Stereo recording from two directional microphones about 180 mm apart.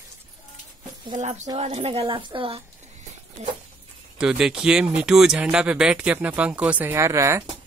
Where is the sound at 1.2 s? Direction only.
40° right (ahead or behind).